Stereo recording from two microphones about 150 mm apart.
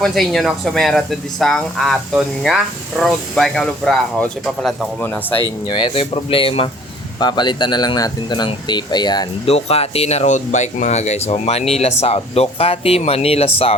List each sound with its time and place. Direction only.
0.0 s speech: centre (ahead or behind)
5.6 s speech: 30° left (ahead or behind)
9.5 s speech: 45° left (ahead or behind)